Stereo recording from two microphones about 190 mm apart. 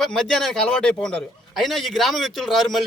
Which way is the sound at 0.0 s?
Centre (ahead or behind).